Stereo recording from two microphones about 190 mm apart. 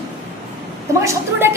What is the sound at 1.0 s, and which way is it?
Speech, 15° right (ahead or behind).